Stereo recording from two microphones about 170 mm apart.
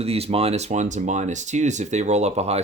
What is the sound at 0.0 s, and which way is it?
Speech, 35° right (ahead or behind).